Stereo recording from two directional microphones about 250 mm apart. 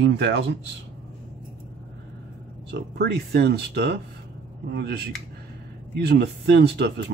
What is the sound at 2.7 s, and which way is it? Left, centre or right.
Speech, right.